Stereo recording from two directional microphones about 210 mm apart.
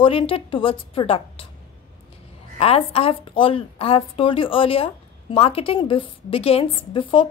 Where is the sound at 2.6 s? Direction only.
25° left (ahead or behind).